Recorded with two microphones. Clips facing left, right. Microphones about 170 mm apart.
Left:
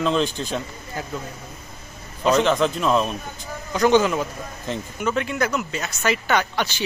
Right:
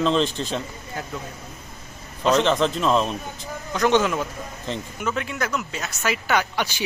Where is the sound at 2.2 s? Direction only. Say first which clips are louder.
Left 1 dB; centre (ahead or behind).